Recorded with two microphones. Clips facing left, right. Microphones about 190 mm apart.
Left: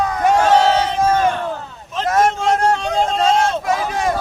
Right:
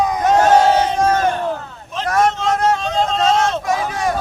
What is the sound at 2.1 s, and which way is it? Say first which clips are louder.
Vehicle: left 1 dB; 25° left (ahead or behind).